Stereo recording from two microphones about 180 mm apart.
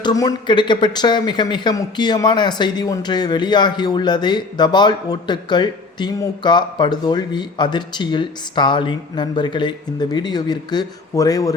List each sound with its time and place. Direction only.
0.0 s speech: 20° left (ahead or behind)